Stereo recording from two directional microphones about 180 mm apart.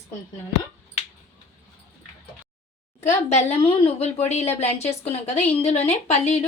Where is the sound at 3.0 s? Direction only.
40° left (ahead or behind).